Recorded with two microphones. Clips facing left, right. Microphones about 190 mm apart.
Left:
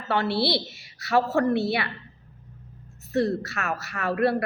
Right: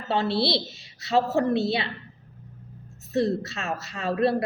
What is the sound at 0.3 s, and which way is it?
A woman's voice, 20° right (ahead or behind).